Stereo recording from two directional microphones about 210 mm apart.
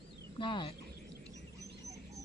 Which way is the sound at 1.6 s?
15° right (ahead or behind).